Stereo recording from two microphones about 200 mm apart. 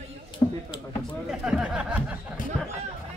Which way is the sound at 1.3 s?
5° right (ahead or behind).